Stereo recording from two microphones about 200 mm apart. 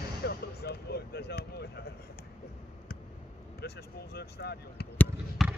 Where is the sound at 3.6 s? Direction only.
55° left (ahead or behind).